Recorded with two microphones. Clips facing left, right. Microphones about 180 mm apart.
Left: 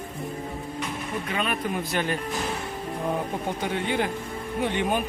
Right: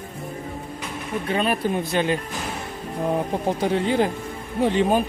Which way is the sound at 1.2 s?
35° right (ahead or behind).